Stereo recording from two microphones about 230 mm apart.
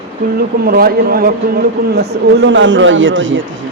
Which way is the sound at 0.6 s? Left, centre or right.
Right.